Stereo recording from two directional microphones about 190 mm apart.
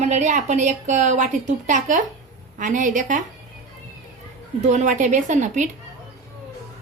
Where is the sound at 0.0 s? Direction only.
40° right (ahead or behind).